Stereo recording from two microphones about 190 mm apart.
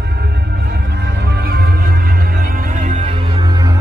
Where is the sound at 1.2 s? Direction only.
55° right (ahead or behind); by 3.2 s 40° right (ahead or behind).